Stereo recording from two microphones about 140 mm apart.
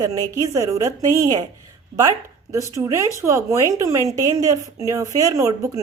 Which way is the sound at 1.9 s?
45° right (ahead or behind).